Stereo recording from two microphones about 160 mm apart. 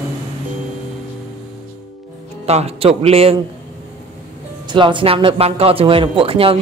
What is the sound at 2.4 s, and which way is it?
Speech, 40° right (ahead or behind).